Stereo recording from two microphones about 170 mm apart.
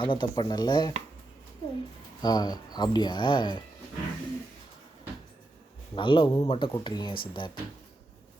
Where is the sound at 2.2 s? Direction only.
25° left (ahead or behind).